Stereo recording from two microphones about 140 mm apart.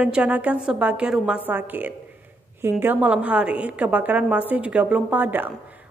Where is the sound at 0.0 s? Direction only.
10° right (ahead or behind).